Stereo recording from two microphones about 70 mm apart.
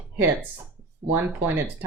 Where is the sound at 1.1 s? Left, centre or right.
Right.